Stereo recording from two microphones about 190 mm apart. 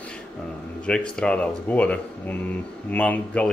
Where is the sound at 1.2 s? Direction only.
5° left (ahead or behind).